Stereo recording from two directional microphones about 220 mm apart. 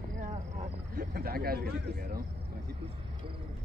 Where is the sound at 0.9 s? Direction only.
45° right (ahead or behind).